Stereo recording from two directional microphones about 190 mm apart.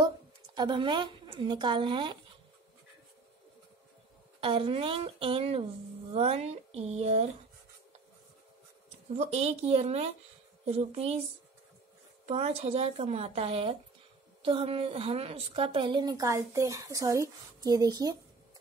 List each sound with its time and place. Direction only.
0.6 s a woman's voice: 25° right (ahead or behind)
4.4 s a woman's voice: 30° right (ahead or behind)
9.1 s a woman's voice: 35° right (ahead or behind)
12.3 s a woman's voice: 35° right (ahead or behind)